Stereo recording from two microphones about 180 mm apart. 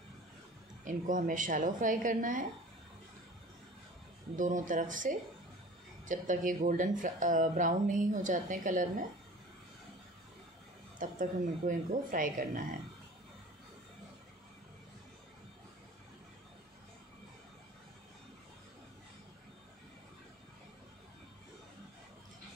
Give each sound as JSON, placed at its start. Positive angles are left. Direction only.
{"t": 0.8, "sound": "speech", "side_deg": -45}
{"t": 4.4, "sound": "speech", "side_deg": -45}
{"t": 11.0, "sound": "speech", "side_deg": -45}